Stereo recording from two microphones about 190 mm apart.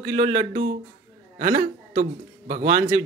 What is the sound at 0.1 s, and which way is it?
Speech, 50° right (ahead or behind).